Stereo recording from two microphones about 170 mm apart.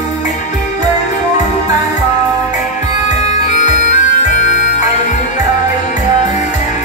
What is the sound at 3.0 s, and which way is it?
Bagpipes, 45° left (ahead or behind).